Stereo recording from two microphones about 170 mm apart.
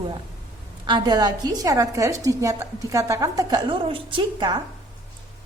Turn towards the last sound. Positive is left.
turn(degrees=-30)  # may be behind; listen again after turning